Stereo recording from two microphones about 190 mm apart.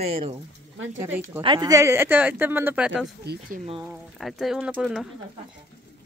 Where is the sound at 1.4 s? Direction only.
20° right (ahead or behind); by 5.0 s 5° right (ahead or behind).